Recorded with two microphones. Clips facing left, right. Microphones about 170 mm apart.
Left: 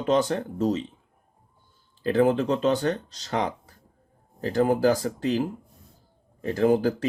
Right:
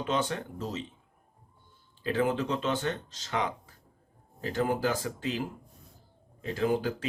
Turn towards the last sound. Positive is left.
turn(degrees=40)  # may be behind; listen again after turning